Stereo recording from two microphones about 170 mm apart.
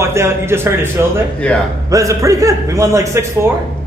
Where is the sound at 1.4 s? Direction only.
5° left (ahead or behind).